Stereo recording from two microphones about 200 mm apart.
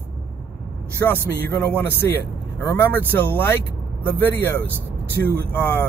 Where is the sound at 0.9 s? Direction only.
10° left (ahead or behind).